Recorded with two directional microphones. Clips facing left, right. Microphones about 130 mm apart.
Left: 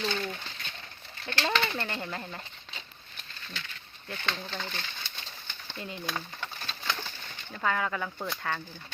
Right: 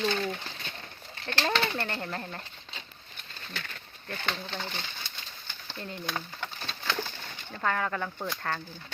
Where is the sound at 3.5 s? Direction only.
50° right (ahead or behind).